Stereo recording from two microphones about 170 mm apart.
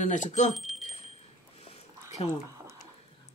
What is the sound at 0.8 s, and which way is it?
Wind chime, 40° left (ahead or behind).